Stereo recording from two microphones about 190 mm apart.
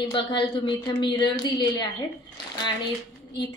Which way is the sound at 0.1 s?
25° left (ahead or behind).